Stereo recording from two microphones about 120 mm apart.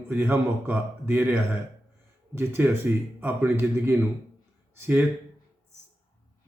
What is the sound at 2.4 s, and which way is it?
A man's voice, 20° right (ahead or behind).